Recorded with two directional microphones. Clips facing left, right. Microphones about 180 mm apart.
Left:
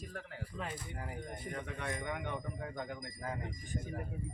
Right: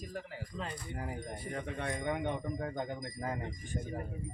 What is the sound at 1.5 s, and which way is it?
Speech, 30° right (ahead or behind).